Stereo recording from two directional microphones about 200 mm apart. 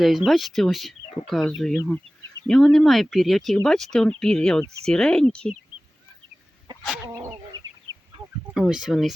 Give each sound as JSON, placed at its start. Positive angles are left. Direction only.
{"t": 0.3, "sound": "speech", "side_deg": 0}
{"t": 6.7, "sound": "chicken", "side_deg": -20}
{"t": 8.5, "sound": "speech", "side_deg": -5}